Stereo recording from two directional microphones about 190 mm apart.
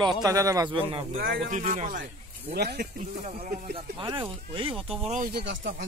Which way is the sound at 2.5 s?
55° right (ahead or behind).